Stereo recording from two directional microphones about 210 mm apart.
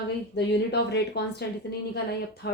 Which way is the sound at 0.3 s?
55° left (ahead or behind).